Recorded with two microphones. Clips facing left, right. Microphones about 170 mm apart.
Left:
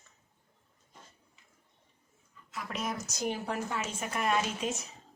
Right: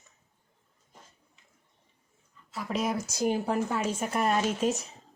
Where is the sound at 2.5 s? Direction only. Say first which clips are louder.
Right 6 dB; 35° right (ahead or behind).